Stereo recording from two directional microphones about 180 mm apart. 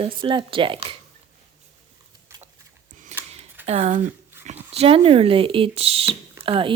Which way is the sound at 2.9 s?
45° right (ahead or behind).